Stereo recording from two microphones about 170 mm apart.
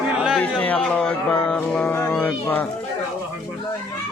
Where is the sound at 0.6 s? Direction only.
5° left (ahead or behind).